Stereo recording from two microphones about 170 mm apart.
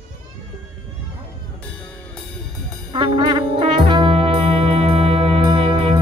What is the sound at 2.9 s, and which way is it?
Music, 30° right (ahead or behind).